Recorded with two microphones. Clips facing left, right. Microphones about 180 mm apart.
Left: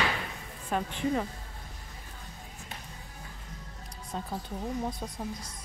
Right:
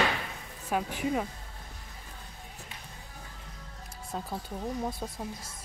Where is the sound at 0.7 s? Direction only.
5° right (ahead or behind).